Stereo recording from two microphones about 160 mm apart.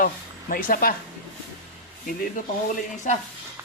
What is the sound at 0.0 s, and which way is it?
Speech, 60° left (ahead or behind).